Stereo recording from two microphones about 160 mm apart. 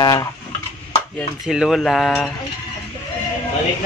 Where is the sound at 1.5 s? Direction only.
Centre (ahead or behind).